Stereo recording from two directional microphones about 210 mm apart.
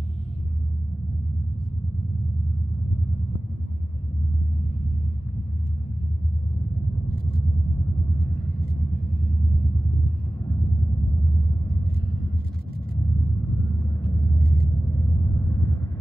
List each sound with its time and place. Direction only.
15.2 s vehicle: 20° left (ahead or behind)